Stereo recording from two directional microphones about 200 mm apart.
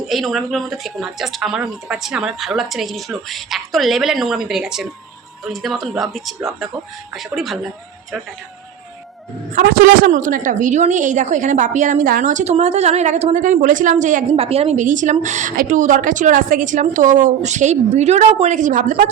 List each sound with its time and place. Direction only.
0.1 s speech: centre (ahead or behind)
9.6 s a woman's voice: 50° right (ahead or behind)